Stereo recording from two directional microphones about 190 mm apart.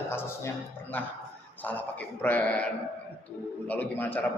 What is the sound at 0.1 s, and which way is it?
A man's voice, 10° left (ahead or behind).